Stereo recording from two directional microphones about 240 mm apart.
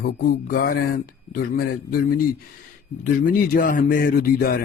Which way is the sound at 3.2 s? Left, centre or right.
Left.